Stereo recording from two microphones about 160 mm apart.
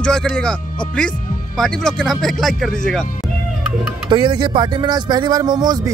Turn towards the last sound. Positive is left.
turn(degrees=-25)  # may be behind; listen again after turning